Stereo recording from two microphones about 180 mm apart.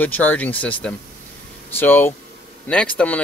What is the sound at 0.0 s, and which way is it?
Speech, 10° left (ahead or behind).